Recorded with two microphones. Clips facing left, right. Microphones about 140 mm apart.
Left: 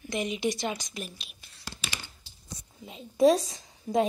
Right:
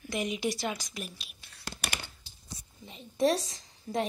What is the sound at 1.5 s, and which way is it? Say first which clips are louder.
Whispering: right 2 dB; 65° right (ahead or behind).